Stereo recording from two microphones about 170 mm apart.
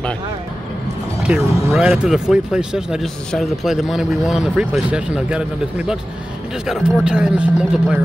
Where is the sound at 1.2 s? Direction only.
5° right (ahead or behind).